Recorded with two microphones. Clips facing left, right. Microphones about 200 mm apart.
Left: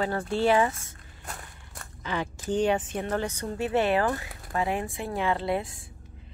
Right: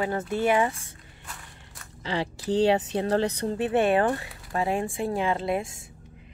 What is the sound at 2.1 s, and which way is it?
Speech, 30° right (ahead or behind).